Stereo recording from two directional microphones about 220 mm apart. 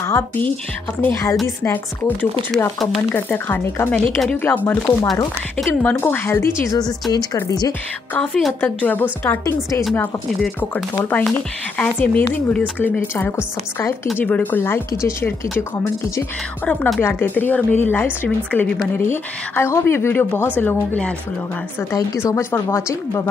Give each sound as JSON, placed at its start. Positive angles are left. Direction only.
{"t": 0.0, "sound": "speech", "side_deg": 10}
{"t": 8.2, "sound": "speech", "side_deg": 5}